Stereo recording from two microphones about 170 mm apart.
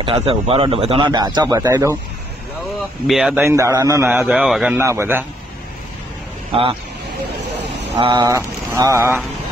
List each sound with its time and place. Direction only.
0.0 s speech: 30° right (ahead or behind)
3.1 s a man's voice: 5° right (ahead or behind)
3.4 s a man's voice: 15° right (ahead or behind)
4.3 s a man's voice: 5° right (ahead or behind)
4.7 s a man's voice: 15° right (ahead or behind)
6.5 s speech: 30° right (ahead or behind)
8.0 s mantra: 25° right (ahead or behind)